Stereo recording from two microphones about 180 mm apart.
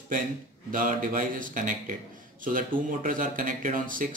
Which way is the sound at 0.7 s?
45° right (ahead or behind).